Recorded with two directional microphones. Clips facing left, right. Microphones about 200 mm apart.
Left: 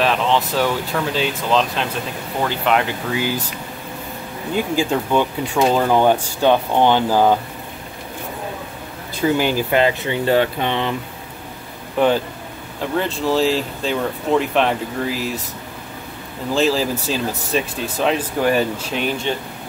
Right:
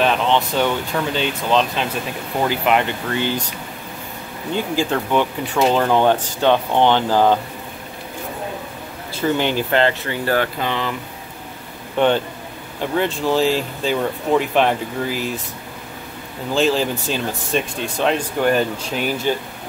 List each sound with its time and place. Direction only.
0.0 s speech: centre (ahead or behind)
4.7 s speech: 15° left (ahead or behind)
9.1 s speech: 10° left (ahead or behind)
12.0 s speech: 5° left (ahead or behind)
16.5 s speech: centre (ahead or behind)